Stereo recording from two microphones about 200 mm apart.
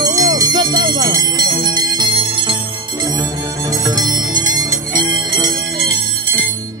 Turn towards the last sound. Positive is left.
turn(degrees=-20)  # may be behind; listen again after turning